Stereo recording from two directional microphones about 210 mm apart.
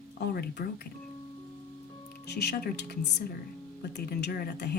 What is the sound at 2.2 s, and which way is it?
Speech, 50° left (ahead or behind).